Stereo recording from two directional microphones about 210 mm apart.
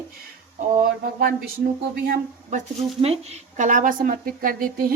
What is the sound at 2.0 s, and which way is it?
A woman's voice, 35° right (ahead or behind).